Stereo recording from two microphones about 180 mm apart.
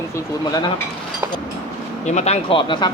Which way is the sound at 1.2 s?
15° right (ahead or behind).